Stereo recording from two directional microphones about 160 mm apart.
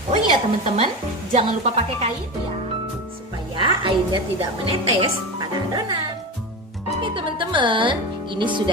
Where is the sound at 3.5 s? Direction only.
30° right (ahead or behind).